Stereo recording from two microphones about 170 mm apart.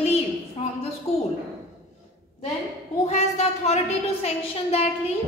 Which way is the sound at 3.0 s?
40° left (ahead or behind).